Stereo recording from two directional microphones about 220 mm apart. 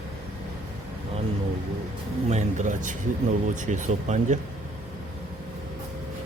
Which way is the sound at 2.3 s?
35° right (ahead or behind).